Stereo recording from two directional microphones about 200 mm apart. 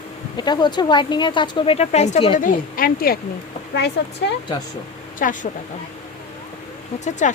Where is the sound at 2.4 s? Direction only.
45° left (ahead or behind).